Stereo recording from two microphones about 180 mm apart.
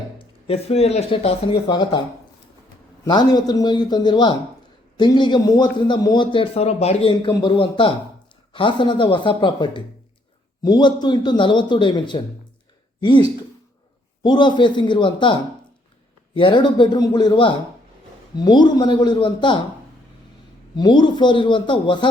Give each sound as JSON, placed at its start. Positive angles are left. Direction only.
{"t": 0.4, "sound": "a man's voice", "side_deg": 35}
{"t": 20.7, "sound": "a man's voice", "side_deg": 25}